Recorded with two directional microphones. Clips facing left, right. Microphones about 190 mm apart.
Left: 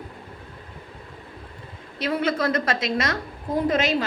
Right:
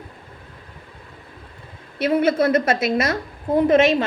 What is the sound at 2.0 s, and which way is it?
A woman's voice, 25° right (ahead or behind).